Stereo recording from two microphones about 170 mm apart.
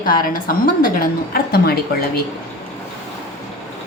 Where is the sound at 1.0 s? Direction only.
65° left (ahead or behind).